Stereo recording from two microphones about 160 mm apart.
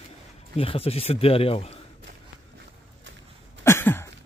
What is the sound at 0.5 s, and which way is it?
Speech, 35° left (ahead or behind).